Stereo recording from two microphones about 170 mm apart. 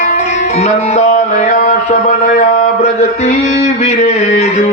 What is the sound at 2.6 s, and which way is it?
Mantra, 40° left (ahead or behind).